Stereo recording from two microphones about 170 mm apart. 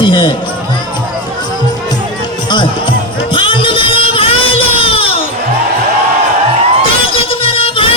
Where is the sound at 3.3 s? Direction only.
30° left (ahead or behind).